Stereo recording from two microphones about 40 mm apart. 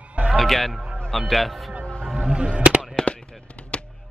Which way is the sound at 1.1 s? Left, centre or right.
Centre.